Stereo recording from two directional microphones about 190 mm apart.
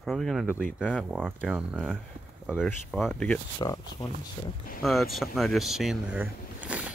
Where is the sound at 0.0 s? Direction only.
Centre (ahead or behind).